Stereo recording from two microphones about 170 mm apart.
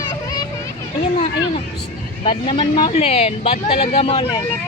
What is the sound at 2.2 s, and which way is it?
Speech, 30° left (ahead or behind).